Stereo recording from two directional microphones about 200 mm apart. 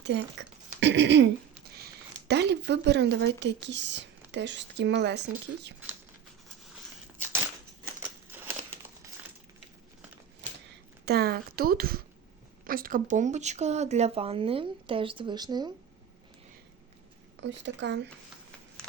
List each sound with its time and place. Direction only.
0.0 s speech: 60° right (ahead or behind)
11.0 s speech: 55° right (ahead or behind); by 15.7 s 20° right (ahead or behind)
17.4 s speech: 60° right (ahead or behind)